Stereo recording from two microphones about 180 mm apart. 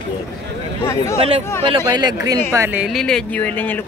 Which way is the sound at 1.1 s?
35° right (ahead or behind).